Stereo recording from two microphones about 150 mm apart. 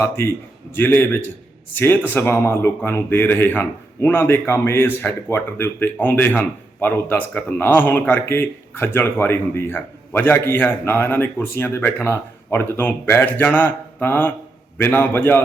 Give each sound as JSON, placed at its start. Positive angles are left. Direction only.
{"t": 0.0, "sound": "speech", "side_deg": 15}